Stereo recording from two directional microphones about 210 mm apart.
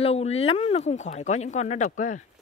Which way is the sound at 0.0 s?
30° left (ahead or behind).